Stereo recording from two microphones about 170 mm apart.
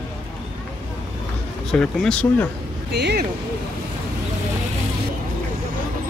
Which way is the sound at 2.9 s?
75° right (ahead or behind).